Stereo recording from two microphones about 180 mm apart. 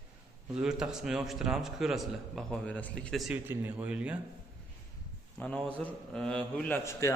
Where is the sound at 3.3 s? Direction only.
10° right (ahead or behind).